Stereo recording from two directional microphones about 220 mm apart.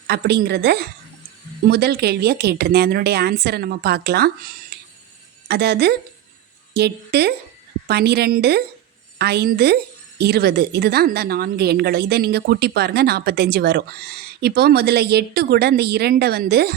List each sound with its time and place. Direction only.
0.1 s a woman's voice: 45° right (ahead or behind)
4.7 s music: 45° right (ahead or behind)
5.5 s a woman's voice: 50° right (ahead or behind)